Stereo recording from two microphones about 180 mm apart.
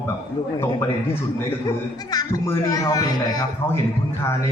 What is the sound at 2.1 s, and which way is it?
Speech, 20° left (ahead or behind).